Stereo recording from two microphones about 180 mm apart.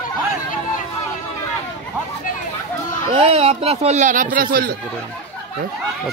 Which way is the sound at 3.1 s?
35° right (ahead or behind).